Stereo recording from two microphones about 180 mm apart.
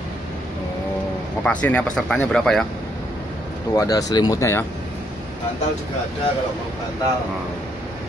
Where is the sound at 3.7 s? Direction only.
20° left (ahead or behind).